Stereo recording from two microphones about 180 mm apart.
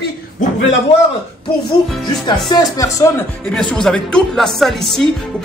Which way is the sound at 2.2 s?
20° left (ahead or behind).